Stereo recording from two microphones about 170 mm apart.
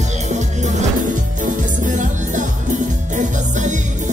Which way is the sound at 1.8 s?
50° right (ahead or behind).